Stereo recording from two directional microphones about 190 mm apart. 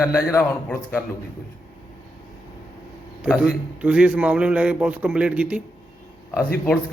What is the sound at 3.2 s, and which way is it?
A man's voice, 5° right (ahead or behind).